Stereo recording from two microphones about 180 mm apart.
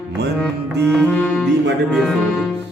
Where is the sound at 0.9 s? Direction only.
10° left (ahead or behind).